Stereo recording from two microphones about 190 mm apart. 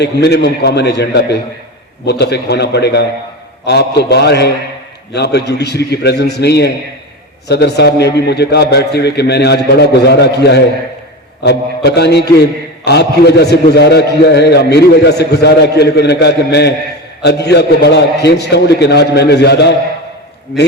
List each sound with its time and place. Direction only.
0.0 s a man's voice: 60° left (ahead or behind)